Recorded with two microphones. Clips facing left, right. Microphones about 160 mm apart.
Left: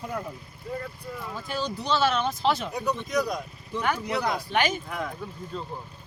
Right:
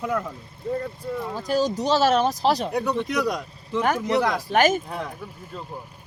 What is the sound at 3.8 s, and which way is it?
Speech, 45° right (ahead or behind).